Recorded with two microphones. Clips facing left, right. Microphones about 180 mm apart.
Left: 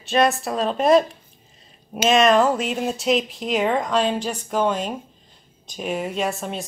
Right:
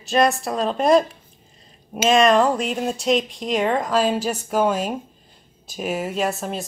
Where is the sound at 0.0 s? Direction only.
Centre (ahead or behind).